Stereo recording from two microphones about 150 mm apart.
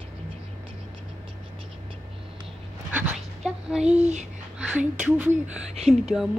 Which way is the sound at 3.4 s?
5° right (ahead or behind).